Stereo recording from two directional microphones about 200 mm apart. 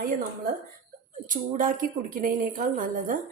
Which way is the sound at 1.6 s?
45° right (ahead or behind).